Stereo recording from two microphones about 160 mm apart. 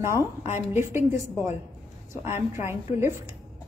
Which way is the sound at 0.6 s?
15° right (ahead or behind).